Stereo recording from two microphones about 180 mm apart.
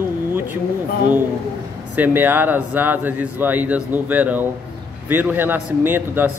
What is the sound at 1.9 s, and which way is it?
Speech, 10° right (ahead or behind).